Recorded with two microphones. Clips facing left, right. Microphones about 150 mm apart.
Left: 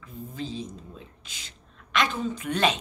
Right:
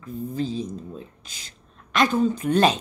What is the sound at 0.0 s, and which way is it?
Speech, 40° right (ahead or behind).